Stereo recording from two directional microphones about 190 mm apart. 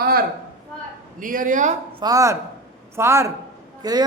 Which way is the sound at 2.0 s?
20° right (ahead or behind).